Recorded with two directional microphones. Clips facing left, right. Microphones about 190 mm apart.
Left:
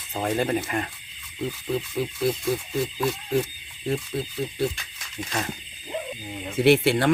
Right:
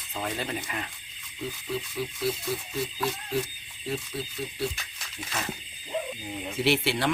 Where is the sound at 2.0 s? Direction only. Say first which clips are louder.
Left 5 dB; 50° left (ahead or behind).